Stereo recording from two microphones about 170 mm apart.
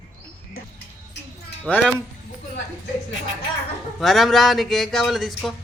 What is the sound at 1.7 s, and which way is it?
Speech, 5° left (ahead or behind).